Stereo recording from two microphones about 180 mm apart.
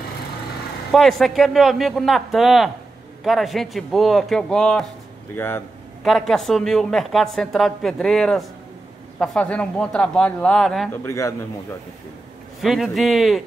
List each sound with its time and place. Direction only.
0.9 s a woman's voice: centre (ahead or behind)
6.0 s a woman's voice: centre (ahead or behind)
11.1 s speech: 15° left (ahead or behind)
12.6 s a woman's voice: centre (ahead or behind)